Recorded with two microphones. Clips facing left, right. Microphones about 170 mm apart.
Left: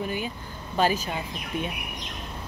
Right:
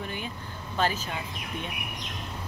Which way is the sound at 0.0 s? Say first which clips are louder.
Left 6 dB; 10° left (ahead or behind).